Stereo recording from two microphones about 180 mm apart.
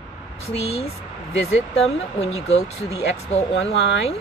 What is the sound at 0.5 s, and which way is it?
Speech, 35° left (ahead or behind).